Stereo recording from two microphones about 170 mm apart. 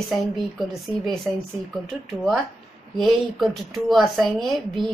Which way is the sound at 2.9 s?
Centre (ahead or behind).